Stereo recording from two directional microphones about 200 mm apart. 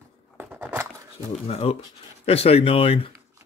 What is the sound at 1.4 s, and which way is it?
Speech, 30° left (ahead or behind).